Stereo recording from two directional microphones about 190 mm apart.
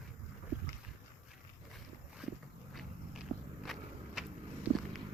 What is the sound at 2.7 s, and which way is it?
Walk, centre (ahead or behind).